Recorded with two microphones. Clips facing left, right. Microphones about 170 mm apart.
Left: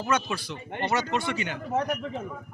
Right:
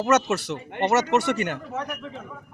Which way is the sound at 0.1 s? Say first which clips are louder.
Right 7 dB; 75° right (ahead or behind).